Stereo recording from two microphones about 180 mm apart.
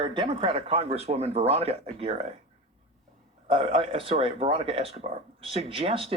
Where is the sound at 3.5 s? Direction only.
30° right (ahead or behind).